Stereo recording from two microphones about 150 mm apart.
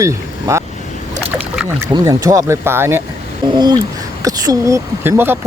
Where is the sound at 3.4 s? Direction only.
30° right (ahead or behind).